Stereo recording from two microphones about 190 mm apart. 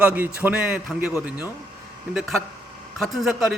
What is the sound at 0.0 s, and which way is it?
A man's voice, 10° right (ahead or behind).